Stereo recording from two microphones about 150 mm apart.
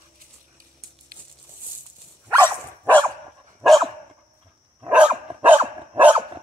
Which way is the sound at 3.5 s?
Centre (ahead or behind).